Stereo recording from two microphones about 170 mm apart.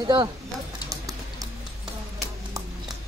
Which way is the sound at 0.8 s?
20° right (ahead or behind).